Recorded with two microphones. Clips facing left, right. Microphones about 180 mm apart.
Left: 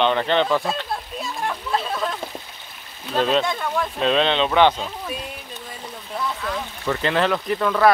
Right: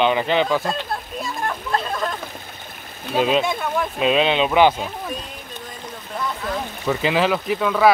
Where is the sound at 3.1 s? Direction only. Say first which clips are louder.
Right 1 dB; 10° right (ahead or behind).